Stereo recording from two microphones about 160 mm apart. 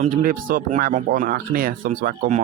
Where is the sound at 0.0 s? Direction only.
60° right (ahead or behind).